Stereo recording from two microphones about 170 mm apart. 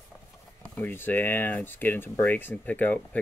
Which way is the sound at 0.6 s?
10° left (ahead or behind).